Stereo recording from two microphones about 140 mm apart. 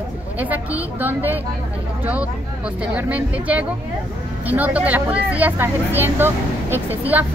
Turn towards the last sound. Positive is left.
turn(degrees=-10)  # may be behind; listen again after turning